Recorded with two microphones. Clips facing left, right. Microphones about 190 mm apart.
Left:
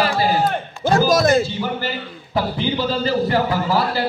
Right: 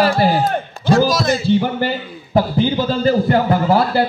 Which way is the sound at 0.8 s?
50° left (ahead or behind).